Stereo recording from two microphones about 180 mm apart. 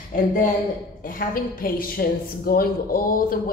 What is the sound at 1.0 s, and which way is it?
A man's voice, 50° left (ahead or behind).